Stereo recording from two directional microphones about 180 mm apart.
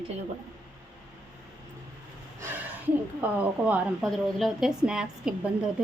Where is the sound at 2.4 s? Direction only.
10° right (ahead or behind).